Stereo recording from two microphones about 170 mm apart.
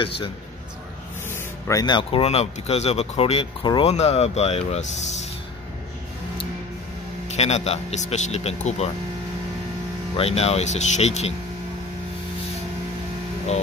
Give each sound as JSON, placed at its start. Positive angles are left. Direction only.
{"t": 1.3, "sound": "speech", "side_deg": 20}
{"t": 7.2, "sound": "speech", "side_deg": 40}
{"t": 10.1, "sound": "speech", "side_deg": 35}